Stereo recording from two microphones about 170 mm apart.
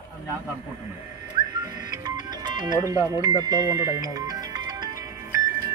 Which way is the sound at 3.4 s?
20° right (ahead or behind).